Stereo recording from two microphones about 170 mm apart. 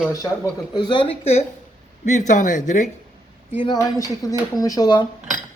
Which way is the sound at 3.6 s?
25° left (ahead or behind).